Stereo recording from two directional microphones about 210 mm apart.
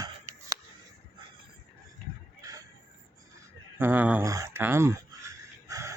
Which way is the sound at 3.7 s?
10° right (ahead or behind).